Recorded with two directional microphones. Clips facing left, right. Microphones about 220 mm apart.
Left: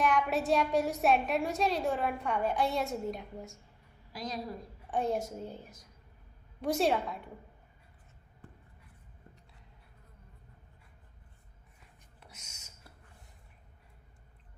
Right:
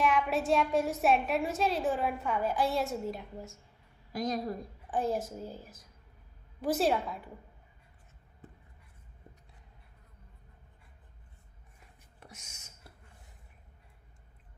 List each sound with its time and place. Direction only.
0.0 s a woman's voice: centre (ahead or behind)
4.1 s a woman's voice: 50° right (ahead or behind)
4.9 s a woman's voice: centre (ahead or behind)
12.2 s a sound: 50° right (ahead or behind)